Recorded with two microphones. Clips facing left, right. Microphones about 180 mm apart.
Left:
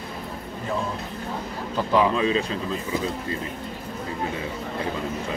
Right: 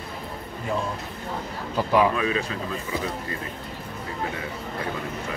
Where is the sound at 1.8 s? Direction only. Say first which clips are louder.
Even; 10° right (ahead or behind).